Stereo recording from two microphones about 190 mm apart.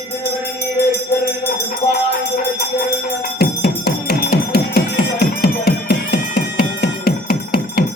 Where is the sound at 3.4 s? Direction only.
55° left (ahead or behind).